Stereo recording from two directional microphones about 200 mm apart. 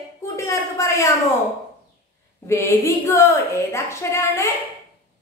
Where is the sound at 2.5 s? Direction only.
15° left (ahead or behind).